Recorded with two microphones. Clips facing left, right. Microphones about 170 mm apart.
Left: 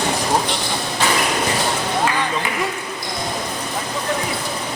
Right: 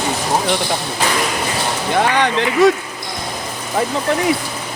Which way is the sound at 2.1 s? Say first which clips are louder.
Right 7 dB; 75° right (ahead or behind).